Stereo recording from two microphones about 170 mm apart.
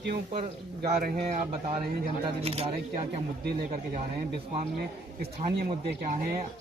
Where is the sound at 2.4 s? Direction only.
35° right (ahead or behind).